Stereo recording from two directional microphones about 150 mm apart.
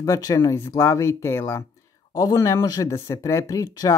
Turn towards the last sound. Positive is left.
turn(degrees=20)  # may be behind; listen again after turning